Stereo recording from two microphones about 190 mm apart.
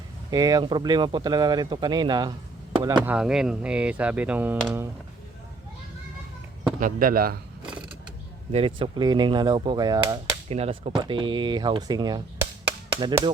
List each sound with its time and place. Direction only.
0.3 s speech: 20° right (ahead or behind)
2.9 s speech: 5° right (ahead or behind)
6.7 s speech: 45° right (ahead or behind)
8.5 s speech: 30° right (ahead or behind)
10.5 s speech: 35° right (ahead or behind)